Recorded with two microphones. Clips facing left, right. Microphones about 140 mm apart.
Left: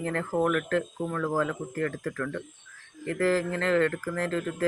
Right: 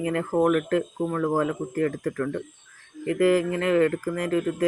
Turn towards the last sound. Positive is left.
turn(degrees=-15)  # may be behind; listen again after turning